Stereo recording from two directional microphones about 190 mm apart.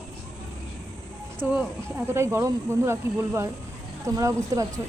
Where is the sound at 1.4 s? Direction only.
10° right (ahead or behind).